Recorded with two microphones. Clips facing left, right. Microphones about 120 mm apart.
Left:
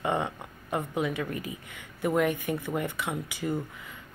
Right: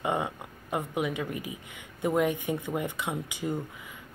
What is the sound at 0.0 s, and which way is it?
A woman's voice, 15° right (ahead or behind).